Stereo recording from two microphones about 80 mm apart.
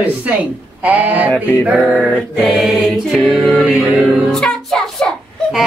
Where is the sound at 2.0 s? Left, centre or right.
Centre.